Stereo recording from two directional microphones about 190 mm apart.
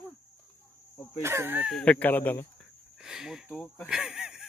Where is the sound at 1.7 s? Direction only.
5° left (ahead or behind).